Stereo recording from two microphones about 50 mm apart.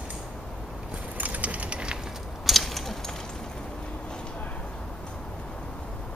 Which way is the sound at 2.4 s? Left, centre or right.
Centre.